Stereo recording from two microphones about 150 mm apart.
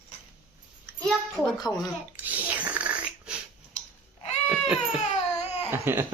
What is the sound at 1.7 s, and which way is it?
Speech, 20° left (ahead or behind).